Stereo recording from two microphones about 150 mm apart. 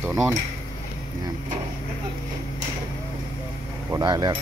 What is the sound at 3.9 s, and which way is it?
Speech, 25° right (ahead or behind).